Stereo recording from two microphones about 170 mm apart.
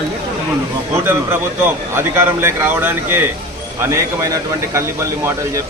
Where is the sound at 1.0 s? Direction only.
10° right (ahead or behind).